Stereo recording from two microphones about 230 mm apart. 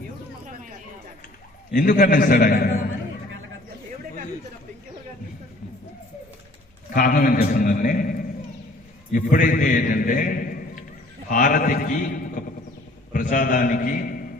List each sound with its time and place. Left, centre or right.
1.7 s a man's voice: left
6.9 s a man's voice: left